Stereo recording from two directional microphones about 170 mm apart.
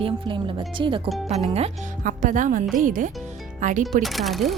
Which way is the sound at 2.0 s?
50° right (ahead or behind).